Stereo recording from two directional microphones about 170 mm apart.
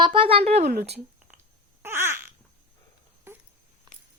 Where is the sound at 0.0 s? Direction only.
30° right (ahead or behind).